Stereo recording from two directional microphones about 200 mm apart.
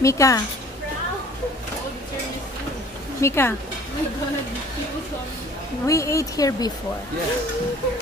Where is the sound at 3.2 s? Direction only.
10° left (ahead or behind).